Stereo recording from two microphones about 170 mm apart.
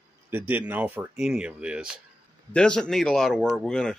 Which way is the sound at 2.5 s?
5° left (ahead or behind).